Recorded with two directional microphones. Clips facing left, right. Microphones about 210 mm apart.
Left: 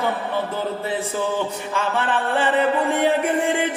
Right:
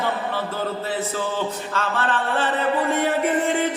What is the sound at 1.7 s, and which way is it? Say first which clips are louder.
Speech: left 3 dB; 15° left (ahead or behind).